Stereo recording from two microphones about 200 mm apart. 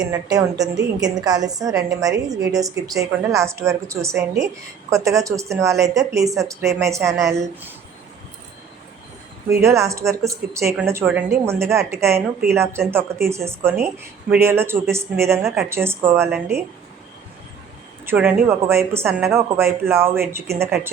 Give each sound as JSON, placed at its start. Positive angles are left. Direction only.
{"t": 0.1, "sound": "speech", "side_deg": -20}
{"t": 9.5, "sound": "speech", "side_deg": -15}
{"t": 18.0, "sound": "speech", "side_deg": -10}